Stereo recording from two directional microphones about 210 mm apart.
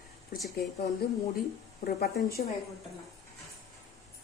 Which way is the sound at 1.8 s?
45° left (ahead or behind).